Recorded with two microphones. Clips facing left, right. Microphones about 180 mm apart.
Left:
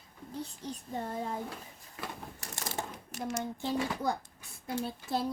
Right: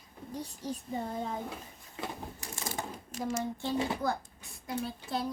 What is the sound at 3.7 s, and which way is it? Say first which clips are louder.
Speech: right 2 dB; 25° right (ahead or behind).